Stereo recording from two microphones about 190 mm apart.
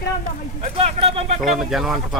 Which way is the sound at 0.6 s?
35° right (ahead or behind).